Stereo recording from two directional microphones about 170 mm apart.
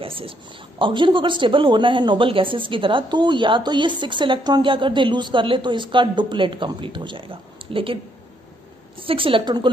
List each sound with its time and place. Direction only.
0.0 s speech: 30° right (ahead or behind)
9.0 s a woman's voice: 30° right (ahead or behind)